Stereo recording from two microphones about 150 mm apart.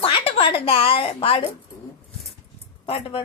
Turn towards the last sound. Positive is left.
turn(degrees=40)  # may be behind; listen again after turning